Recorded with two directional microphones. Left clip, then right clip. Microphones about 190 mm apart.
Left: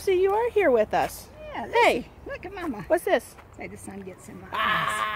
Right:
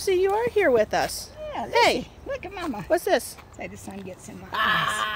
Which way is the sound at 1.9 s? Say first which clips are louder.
Right 2 dB; 30° right (ahead or behind).